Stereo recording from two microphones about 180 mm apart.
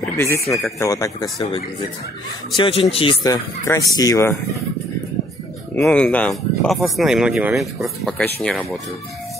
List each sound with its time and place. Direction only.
0.1 s speech: 15° left (ahead or behind); by 3.2 s 30° left (ahead or behind)
3.3 s speech: 20° left (ahead or behind)
5.8 s speech: 5° left (ahead or behind)